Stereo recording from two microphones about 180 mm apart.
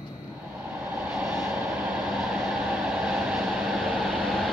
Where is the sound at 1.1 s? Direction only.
5° right (ahead or behind).